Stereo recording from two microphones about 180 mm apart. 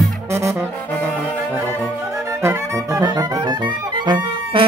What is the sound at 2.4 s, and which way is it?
Music, 15° right (ahead or behind).